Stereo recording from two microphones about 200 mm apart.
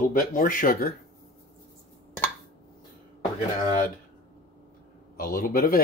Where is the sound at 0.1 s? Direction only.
45° left (ahead or behind).